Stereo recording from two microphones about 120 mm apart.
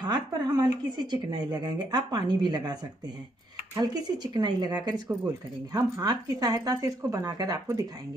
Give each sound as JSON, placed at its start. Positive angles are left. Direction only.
{"t": 0.0, "sound": "speech", "side_deg": -35}
{"t": 3.8, "sound": "speech", "side_deg": -35}